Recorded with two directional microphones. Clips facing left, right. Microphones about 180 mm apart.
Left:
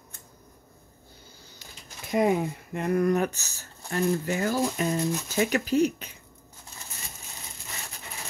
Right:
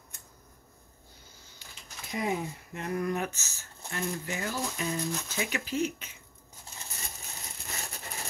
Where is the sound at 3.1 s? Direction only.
40° left (ahead or behind).